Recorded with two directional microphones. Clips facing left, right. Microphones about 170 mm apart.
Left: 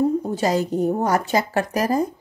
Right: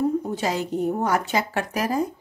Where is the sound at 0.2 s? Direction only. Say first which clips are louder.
Left 5 dB; 40° left (ahead or behind).